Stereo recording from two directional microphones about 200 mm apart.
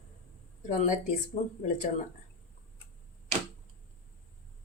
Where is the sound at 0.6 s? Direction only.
40° left (ahead or behind).